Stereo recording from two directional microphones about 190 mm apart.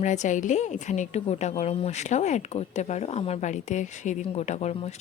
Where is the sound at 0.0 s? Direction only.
40° left (ahead or behind).